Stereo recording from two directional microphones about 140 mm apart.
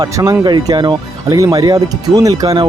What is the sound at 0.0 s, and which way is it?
Speech, 25° right (ahead or behind).